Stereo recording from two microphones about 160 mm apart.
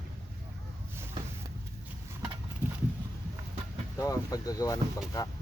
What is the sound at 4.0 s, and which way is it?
Speech, 20° left (ahead or behind).